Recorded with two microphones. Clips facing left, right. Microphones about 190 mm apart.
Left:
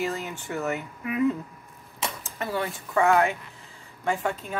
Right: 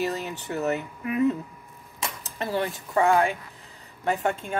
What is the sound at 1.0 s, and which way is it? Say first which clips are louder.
Speech: right 1 dB; 35° right (ahead or behind).